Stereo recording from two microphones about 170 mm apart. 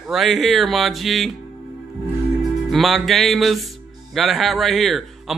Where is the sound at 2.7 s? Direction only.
Centre (ahead or behind).